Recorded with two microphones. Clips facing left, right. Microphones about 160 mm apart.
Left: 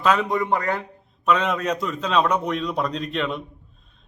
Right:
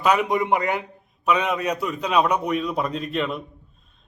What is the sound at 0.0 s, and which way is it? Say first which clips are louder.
A man's voice: right 1 dB; 15° right (ahead or behind).